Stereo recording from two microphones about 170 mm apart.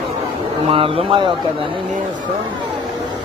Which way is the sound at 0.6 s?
35° right (ahead or behind).